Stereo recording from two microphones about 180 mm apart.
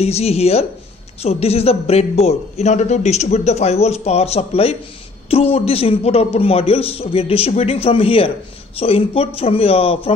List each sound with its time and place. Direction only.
0.0 s a man's voice: 35° left (ahead or behind)